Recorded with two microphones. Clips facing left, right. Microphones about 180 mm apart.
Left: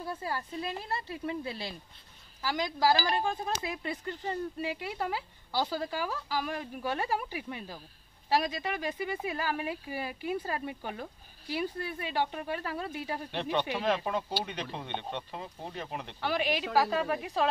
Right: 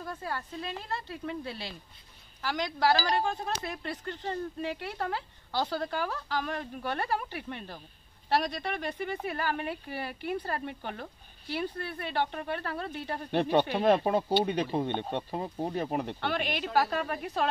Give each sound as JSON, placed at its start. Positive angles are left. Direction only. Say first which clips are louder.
{"t": 0.0, "sound": "speech", "louder": "left 1 dB", "side_deg": 10}
{"t": 2.4, "sound": "speech", "louder": "even", "side_deg": 10}
{"t": 13.3, "sound": "speech", "louder": "right 7 dB", "side_deg": -40}
{"t": 16.2, "sound": "a woman's voice", "louder": "left 1 dB", "side_deg": 5}